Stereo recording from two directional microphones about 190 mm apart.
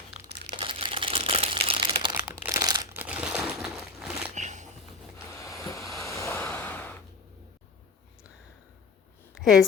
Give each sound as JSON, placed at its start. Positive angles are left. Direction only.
{"t": 0.5, "sound": "crumpling", "side_deg": -25}
{"t": 2.9, "sound": "crumpling", "side_deg": -10}
{"t": 4.4, "sound": "a sound", "side_deg": -40}
{"t": 5.5, "sound": "vehicle", "side_deg": 15}
{"t": 6.0, "sound": "a sound", "side_deg": 15}
{"t": 9.4, "sound": "speech", "side_deg": 0}